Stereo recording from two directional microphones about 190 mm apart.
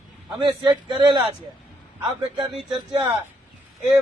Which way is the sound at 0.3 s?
25° right (ahead or behind).